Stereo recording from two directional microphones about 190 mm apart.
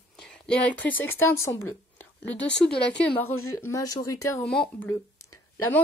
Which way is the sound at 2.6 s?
5° left (ahead or behind).